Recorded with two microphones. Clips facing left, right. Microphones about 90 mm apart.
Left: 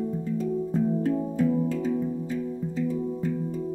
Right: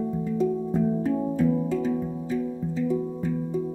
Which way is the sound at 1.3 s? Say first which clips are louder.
Right 1 dB; 5° right (ahead or behind).